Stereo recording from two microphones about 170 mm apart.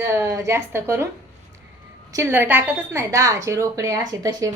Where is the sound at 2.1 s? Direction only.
15° right (ahead or behind).